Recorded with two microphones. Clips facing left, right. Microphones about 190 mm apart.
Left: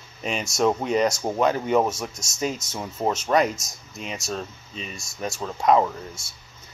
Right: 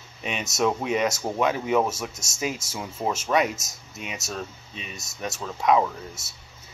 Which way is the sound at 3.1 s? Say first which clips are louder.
Left 2 dB; centre (ahead or behind).